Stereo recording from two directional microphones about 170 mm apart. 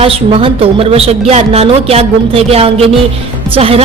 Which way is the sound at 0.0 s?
35° right (ahead or behind).